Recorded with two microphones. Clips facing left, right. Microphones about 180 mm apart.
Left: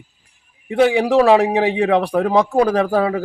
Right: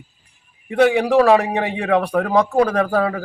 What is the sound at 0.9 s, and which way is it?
Speech, 10° left (ahead or behind).